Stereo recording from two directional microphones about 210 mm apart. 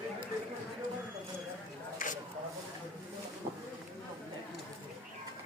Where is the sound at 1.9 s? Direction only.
40° left (ahead or behind).